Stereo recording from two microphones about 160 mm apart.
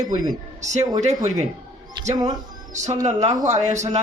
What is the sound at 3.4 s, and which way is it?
Speech, 50° right (ahead or behind).